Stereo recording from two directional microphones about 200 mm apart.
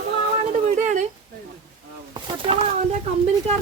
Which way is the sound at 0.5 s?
35° right (ahead or behind).